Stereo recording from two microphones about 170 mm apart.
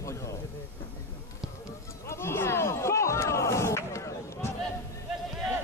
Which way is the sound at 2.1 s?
15° left (ahead or behind).